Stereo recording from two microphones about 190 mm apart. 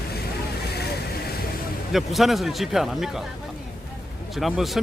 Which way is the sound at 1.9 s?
Centre (ahead or behind).